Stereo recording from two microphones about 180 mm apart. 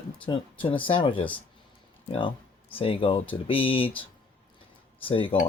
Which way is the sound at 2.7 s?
30° left (ahead or behind).